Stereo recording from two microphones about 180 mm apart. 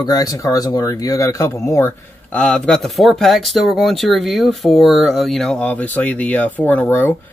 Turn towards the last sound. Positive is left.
turn(degrees=10)  # may be behind; listen again after turning